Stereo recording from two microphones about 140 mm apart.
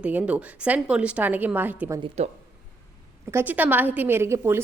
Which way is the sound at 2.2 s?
50° right (ahead or behind).